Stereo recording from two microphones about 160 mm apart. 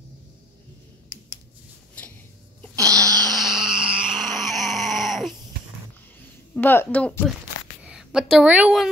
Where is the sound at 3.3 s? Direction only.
Centre (ahead or behind).